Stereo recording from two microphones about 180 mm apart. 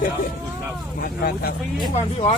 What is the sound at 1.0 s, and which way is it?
Speech, 55° left (ahead or behind).